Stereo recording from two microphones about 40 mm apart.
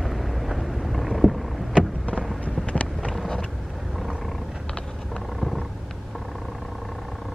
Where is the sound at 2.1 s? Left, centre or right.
Left.